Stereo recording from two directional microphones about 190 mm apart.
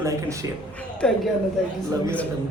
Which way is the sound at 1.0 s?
5° left (ahead or behind).